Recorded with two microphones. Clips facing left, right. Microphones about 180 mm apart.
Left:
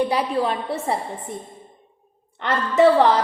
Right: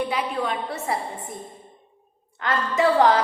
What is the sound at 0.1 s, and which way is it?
Speech, 35° left (ahead or behind).